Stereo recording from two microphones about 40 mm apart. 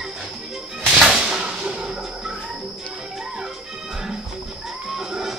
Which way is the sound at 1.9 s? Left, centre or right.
Centre.